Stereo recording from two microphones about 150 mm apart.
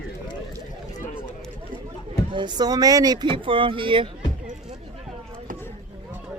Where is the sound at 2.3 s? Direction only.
30° right (ahead or behind).